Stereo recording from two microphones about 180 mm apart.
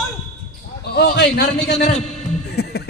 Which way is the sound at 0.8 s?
65° left (ahead or behind).